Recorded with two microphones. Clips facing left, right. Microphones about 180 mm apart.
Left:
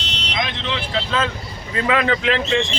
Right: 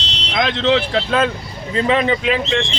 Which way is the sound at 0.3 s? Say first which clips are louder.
Right 10 dB; 85° right.